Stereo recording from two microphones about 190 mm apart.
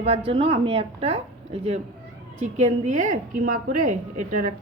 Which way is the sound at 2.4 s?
40° right (ahead or behind).